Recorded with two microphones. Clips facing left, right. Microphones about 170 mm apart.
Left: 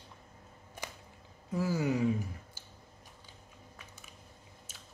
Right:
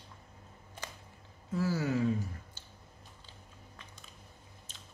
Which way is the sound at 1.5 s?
15° left (ahead or behind).